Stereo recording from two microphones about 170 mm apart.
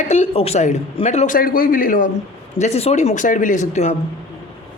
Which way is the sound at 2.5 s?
40° left (ahead or behind).